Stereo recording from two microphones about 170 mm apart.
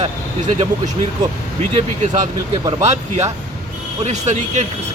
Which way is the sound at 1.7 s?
45° right (ahead or behind).